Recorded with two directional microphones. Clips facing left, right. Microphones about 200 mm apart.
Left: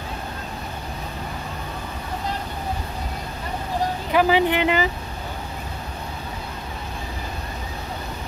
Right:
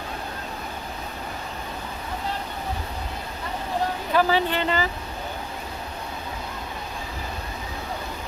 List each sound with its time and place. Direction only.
4.1 s speech: 15° left (ahead or behind)